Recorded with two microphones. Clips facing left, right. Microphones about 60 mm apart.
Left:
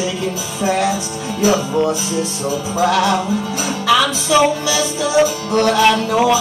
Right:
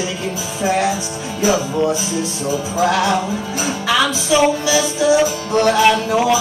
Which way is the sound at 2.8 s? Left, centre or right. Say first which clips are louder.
Left 1 dB; centre.